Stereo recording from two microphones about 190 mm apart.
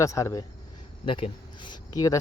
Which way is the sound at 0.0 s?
15° left (ahead or behind).